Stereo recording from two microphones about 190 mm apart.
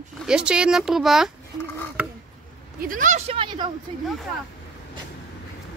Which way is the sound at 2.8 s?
45° right (ahead or behind).